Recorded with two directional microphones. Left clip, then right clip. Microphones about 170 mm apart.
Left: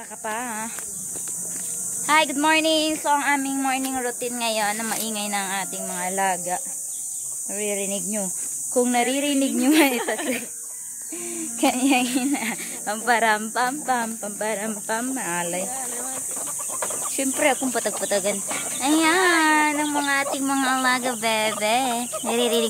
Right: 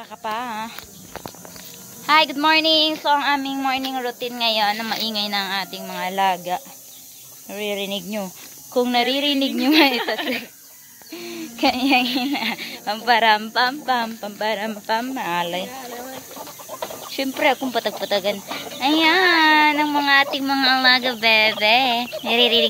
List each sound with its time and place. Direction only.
0.2 s a woman's voice: 15° left (ahead or behind)
2.0 s a woman's voice: 20° left (ahead or behind)
11.2 s a woman's voice: 20° left (ahead or behind)
17.1 s a woman's voice: 10° left (ahead or behind)
20.3 s a woman's voice: 20° left (ahead or behind)